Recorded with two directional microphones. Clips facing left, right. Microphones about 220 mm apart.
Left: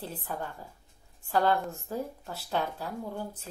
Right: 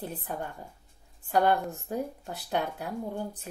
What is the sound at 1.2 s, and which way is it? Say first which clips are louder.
A woman's voice: right 2 dB; 20° right (ahead or behind).